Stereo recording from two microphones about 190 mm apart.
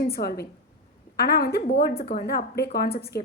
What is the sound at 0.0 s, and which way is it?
A woman's voice, 55° left (ahead or behind).